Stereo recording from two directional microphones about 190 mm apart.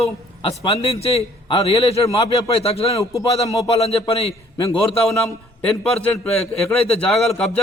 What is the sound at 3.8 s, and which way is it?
Speech, 30° left (ahead or behind).